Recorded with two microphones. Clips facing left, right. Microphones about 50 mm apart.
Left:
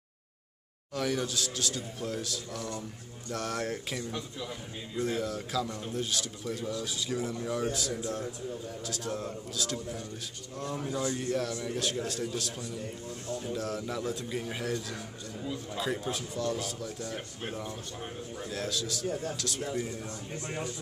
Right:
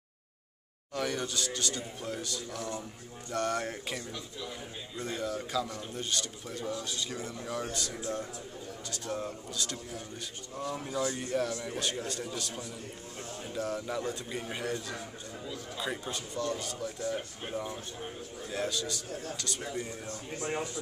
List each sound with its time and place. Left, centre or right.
0.9 s a man's voice: centre
15.4 s a man's voice: centre
15.8 s a man's voice: centre
18.5 s a man's voice: centre